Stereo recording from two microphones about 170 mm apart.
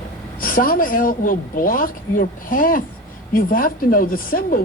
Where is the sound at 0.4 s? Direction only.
55° left (ahead or behind).